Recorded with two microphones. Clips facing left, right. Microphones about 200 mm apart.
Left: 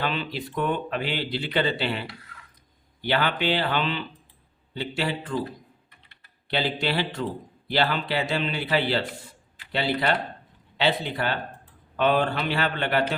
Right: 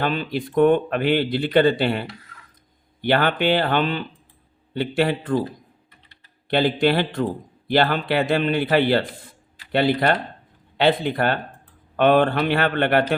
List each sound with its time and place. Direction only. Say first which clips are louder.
0.0 s speech: right 5 dB; 45° right (ahead or behind)
6.5 s speech: right 8 dB; 50° right (ahead or behind)